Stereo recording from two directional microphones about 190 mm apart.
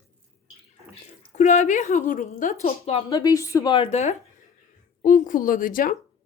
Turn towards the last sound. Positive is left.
turn(degrees=45)  # may be behind; listen again after turning